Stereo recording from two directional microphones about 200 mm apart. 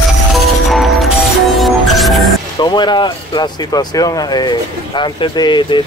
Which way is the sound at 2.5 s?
20° left (ahead or behind).